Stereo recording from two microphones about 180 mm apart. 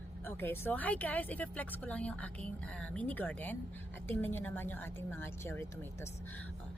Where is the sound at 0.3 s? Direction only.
10° left (ahead or behind).